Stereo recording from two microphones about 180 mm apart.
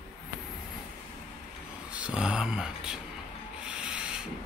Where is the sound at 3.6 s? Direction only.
5° right (ahead or behind).